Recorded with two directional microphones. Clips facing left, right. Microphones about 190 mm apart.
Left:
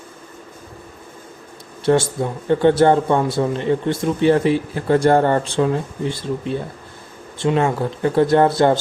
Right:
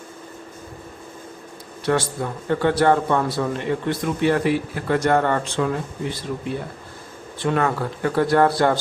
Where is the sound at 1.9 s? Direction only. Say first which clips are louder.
Left 5 dB; 25° left (ahead or behind).